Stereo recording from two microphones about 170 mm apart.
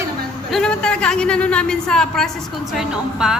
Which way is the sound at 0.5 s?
5° left (ahead or behind).